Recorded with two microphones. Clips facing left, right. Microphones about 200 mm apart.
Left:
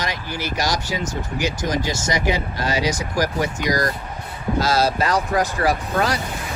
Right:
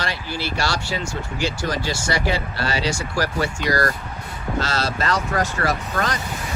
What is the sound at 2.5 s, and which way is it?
Speech, 15° left (ahead or behind).